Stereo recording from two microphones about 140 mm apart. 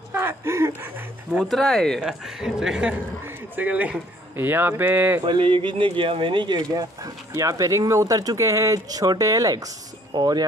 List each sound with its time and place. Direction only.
0.1 s a sound: 15° right (ahead or behind)
1.4 s speech: 5° left (ahead or behind); by 5.2 s 15° right (ahead or behind)
5.2 s speech: 35° right (ahead or behind)